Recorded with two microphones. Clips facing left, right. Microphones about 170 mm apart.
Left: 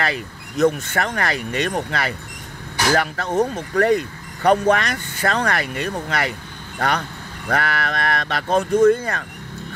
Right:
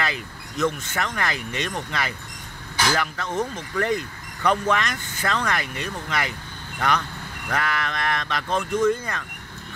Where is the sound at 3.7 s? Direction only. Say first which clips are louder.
Left 7 dB; 60° left (ahead or behind).